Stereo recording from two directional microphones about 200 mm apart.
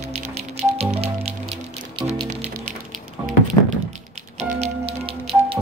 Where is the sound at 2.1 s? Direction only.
30° right (ahead or behind).